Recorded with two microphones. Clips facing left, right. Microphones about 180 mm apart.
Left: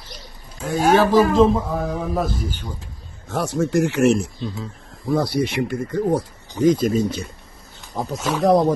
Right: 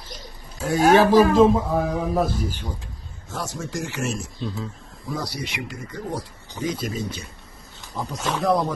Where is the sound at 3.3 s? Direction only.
60° left (ahead or behind).